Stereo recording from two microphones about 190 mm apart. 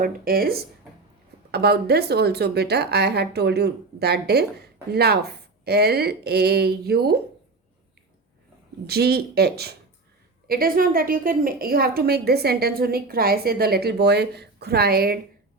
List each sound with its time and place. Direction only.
0.0 s a woman's voice: 50° right (ahead or behind)
8.9 s a woman's voice: 55° right (ahead or behind)